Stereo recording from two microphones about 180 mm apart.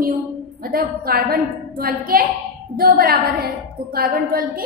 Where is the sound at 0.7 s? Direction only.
55° right (ahead or behind).